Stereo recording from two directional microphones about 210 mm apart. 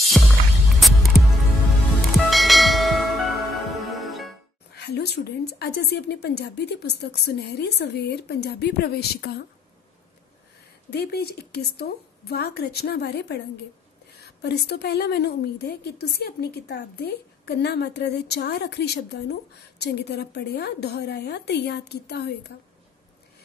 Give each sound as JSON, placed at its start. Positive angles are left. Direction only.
{"t": 0.1, "sound": "music", "side_deg": 0}
{"t": 2.0, "sound": "bell", "side_deg": 0}
{"t": 4.7, "sound": "a woman's voice", "side_deg": 50}
{"t": 10.9, "sound": "a woman's voice", "side_deg": 50}